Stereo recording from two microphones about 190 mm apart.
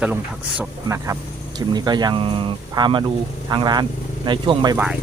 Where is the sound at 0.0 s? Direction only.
5° right (ahead or behind).